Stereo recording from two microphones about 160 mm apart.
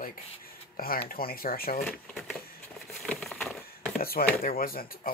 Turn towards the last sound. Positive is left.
turn(degrees=65)  # may be behind; listen again after turning